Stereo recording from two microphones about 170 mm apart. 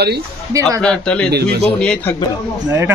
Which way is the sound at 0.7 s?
5° left (ahead or behind).